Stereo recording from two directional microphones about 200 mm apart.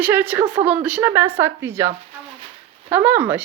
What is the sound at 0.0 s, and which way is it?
A woman's voice, 10° right (ahead or behind).